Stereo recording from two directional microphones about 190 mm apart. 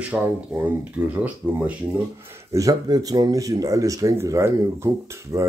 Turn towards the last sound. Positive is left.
turn(degrees=-15)  # may be behind; listen again after turning